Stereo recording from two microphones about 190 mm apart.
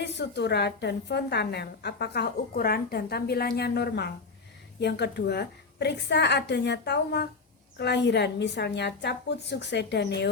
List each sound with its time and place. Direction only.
0.0 s a woman's voice: 65° left (ahead or behind)